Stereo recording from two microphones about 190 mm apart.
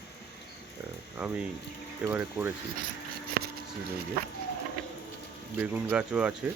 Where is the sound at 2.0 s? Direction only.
10° right (ahead or behind).